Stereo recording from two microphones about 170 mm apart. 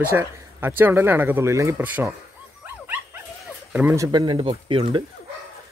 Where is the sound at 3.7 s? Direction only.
15° right (ahead or behind); by 5.0 s 30° right (ahead or behind).